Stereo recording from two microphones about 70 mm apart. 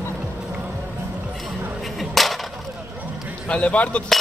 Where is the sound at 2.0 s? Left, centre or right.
Centre.